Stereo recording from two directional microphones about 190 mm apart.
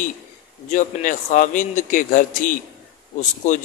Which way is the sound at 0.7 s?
45° left (ahead or behind).